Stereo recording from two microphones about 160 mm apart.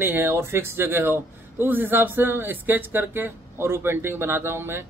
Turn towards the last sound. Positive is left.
turn(degrees=-15)  # may be behind; listen again after turning